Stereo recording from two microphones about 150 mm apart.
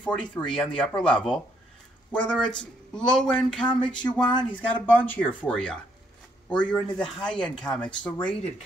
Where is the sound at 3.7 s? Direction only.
30° left (ahead or behind).